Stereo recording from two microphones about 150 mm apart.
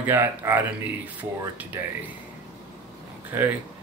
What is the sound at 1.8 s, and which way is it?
Speech, 15° right (ahead or behind).